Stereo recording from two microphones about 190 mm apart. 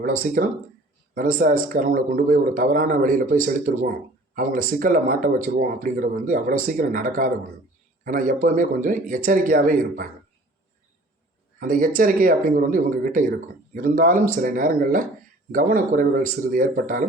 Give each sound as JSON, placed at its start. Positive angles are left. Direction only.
{"t": 0.0, "sound": "speech", "side_deg": -45}
{"t": 11.6, "sound": "speech", "side_deg": -45}